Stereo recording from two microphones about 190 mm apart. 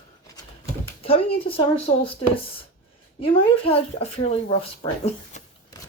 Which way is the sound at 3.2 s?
30° left (ahead or behind).